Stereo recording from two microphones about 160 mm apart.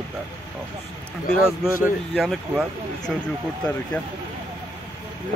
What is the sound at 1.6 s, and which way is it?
Speech, 5° right (ahead or behind).